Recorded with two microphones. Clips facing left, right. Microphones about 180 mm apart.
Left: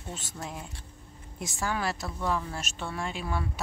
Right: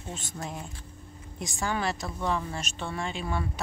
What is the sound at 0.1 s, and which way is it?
Speech, 5° left (ahead or behind).